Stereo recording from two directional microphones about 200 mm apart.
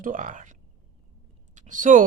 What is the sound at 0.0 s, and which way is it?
Speech, 40° right (ahead or behind).